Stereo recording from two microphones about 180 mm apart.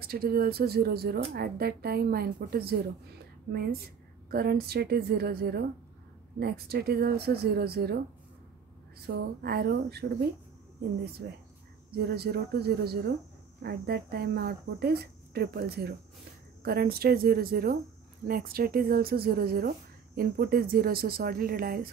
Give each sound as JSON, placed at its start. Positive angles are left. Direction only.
{"t": 0.0, "sound": "speech", "side_deg": -55}
{"t": 4.3, "sound": "speech", "side_deg": -60}
{"t": 9.0, "sound": "speech", "side_deg": -60}
{"t": 11.9, "sound": "speech", "side_deg": -60}